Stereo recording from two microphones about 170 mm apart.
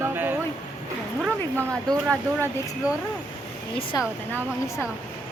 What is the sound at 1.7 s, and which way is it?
Speech, 20° right (ahead or behind).